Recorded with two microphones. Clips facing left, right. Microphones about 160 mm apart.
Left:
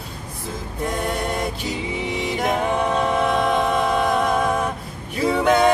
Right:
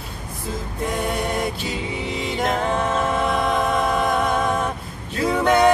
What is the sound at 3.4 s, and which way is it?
Music, centre (ahead or behind).